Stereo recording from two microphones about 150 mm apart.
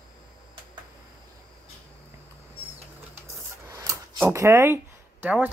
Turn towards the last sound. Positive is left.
turn(degrees=-10)  # may be behind; listen again after turning